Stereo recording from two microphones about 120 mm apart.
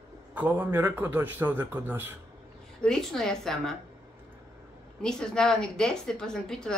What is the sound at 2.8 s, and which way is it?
Speech, 5° left (ahead or behind).